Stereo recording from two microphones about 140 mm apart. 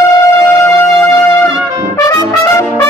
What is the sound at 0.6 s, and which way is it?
Wind instrument, 20° left (ahead or behind).